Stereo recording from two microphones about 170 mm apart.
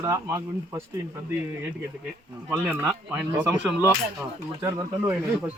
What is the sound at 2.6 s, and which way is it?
Speech, 10° right (ahead or behind).